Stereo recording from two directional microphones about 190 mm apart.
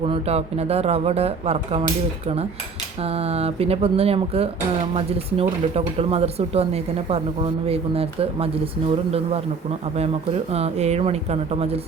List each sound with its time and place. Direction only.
0.0 s speech: 30° right (ahead or behind)
10.5 s speech: 35° right (ahead or behind)